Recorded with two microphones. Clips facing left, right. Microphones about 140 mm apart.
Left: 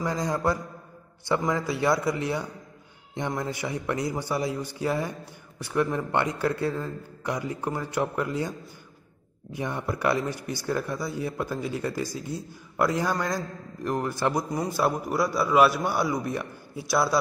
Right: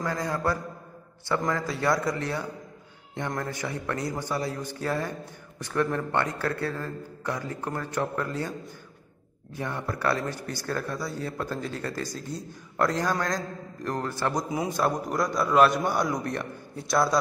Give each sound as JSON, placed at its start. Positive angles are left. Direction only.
{"t": 0.0, "sound": "a man's voice", "side_deg": 15}
{"t": 14.5, "sound": "a man's voice", "side_deg": 0}